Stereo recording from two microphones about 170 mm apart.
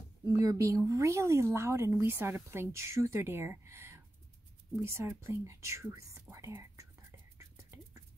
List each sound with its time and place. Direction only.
0.2 s a woman's voice: 20° right (ahead or behind)
4.7 s whispering: 15° right (ahead or behind)